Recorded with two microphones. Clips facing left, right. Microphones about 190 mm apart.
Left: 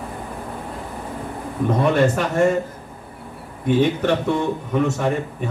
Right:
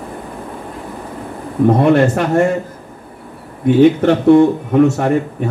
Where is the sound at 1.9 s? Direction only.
60° right (ahead or behind).